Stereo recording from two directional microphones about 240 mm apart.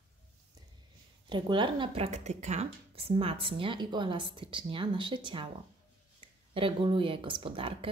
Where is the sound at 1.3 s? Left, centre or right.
Centre.